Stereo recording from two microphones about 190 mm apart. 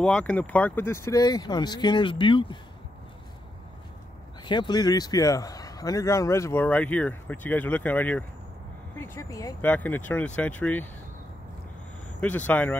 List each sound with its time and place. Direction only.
0.0 s speech: 5° left (ahead or behind); by 2.6 s 25° left (ahead or behind)
4.5 s speech: 25° left (ahead or behind)
12.2 s speech: 10° left (ahead or behind)